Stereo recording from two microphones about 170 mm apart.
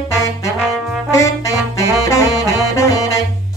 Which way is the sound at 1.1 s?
20° left (ahead or behind).